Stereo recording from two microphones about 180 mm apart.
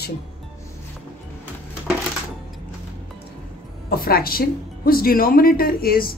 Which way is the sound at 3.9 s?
55° left (ahead or behind).